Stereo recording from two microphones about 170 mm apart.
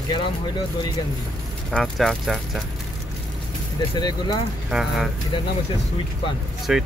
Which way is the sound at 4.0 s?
25° left (ahead or behind).